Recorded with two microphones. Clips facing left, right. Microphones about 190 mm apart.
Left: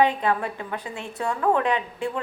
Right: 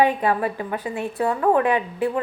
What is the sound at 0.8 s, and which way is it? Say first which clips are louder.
Speech: right 7 dB; 55° right (ahead or behind).